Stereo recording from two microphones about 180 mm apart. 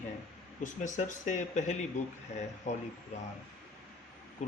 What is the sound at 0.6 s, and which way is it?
A man's voice, 45° left (ahead or behind).